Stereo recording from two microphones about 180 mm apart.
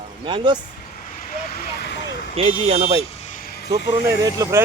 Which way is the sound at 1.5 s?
60° left (ahead or behind).